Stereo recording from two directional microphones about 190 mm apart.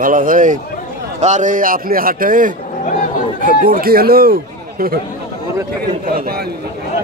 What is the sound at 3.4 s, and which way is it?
Speech, 45° right (ahead or behind).